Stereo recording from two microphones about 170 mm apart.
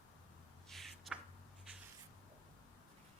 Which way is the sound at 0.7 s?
Centre (ahead or behind).